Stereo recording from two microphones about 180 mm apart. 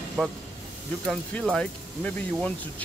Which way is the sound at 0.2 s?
5° left (ahead or behind).